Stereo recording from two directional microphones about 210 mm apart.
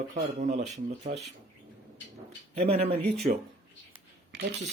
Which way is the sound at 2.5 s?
30° right (ahead or behind).